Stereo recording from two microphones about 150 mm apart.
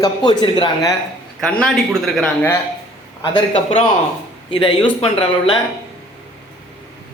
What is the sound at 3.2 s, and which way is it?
Speech, 40° left (ahead or behind).